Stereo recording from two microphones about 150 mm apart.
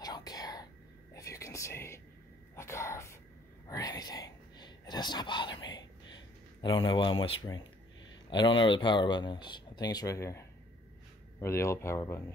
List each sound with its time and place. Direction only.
0.0 s whispering: 25° left (ahead or behind)
2.5 s speech: 20° left (ahead or behind)
3.6 s whispering: 25° left (ahead or behind)
8.3 s speech: 30° left (ahead or behind)